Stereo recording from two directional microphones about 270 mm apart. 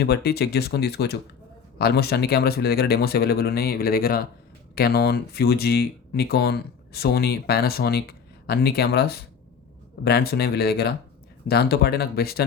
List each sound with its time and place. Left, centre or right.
0.0 s speech: left